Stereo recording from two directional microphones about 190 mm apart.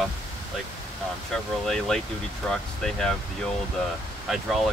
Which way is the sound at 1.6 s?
5° left (ahead or behind).